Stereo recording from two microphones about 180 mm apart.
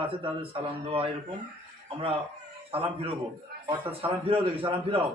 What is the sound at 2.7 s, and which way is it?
A man's voice, 30° right (ahead or behind).